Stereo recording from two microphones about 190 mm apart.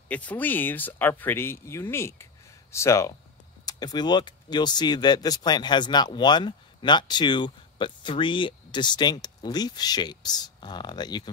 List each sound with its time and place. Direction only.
0.1 s speech: 5° left (ahead or behind)